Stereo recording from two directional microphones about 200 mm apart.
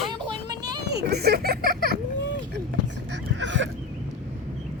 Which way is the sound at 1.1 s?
50° right (ahead or behind).